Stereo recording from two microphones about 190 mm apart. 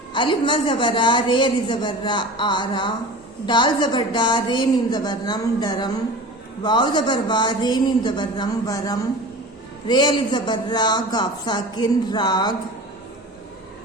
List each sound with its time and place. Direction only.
0.1 s a woman's voice: 25° left (ahead or behind)